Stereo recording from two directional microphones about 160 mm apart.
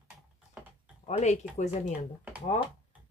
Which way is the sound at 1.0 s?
45° left (ahead or behind).